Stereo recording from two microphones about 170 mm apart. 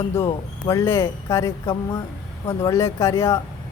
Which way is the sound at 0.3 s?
15° left (ahead or behind).